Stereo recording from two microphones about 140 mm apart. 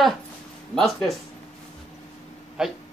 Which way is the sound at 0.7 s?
Centre (ahead or behind).